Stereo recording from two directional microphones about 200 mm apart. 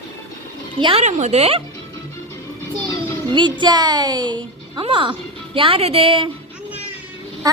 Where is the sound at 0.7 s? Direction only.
30° right (ahead or behind).